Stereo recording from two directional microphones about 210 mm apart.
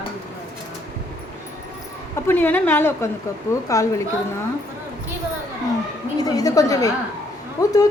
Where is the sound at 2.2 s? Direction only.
10° left (ahead or behind).